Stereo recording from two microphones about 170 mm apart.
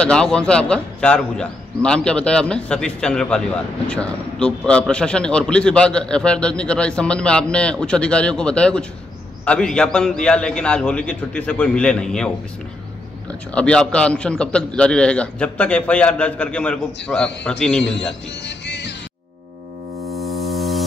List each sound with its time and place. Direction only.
0.0 s a man's voice: 5° left (ahead or behind)
13.6 s a man's voice: 5° left (ahead or behind)
18.4 s music: 90° left